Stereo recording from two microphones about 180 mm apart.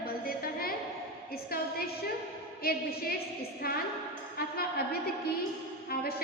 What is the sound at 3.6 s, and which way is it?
Speech, 60° left (ahead or behind).